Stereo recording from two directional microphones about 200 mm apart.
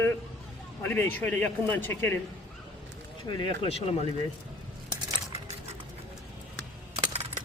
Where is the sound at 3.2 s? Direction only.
25° left (ahead or behind).